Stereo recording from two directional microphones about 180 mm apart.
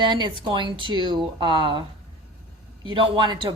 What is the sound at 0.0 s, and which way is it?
A woman's voice, 25° right (ahead or behind).